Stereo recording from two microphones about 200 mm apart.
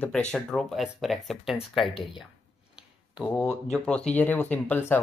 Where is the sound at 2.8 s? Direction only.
5° right (ahead or behind).